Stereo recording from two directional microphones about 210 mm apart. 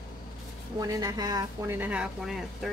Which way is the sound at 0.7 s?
15° right (ahead or behind).